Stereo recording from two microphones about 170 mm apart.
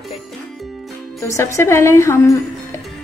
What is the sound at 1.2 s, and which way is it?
Speech, 15° left (ahead or behind).